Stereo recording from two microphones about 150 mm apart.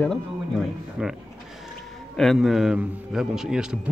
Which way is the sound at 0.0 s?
5° left (ahead or behind).